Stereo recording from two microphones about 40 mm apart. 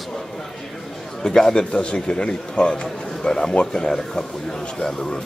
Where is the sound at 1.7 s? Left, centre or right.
Left.